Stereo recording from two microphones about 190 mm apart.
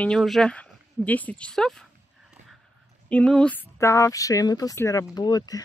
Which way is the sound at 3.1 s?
5° left (ahead or behind).